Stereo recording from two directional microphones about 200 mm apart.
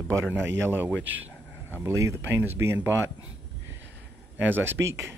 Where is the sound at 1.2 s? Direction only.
10° right (ahead or behind).